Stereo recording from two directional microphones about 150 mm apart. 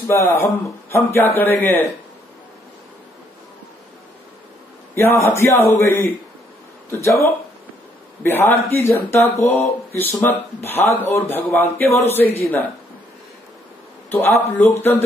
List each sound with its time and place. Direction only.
0.1 s speech: 20° left (ahead or behind)
4.9 s speech: 15° left (ahead or behind)
8.2 s speech: 15° left (ahead or behind)
14.1 s speech: 15° left (ahead or behind)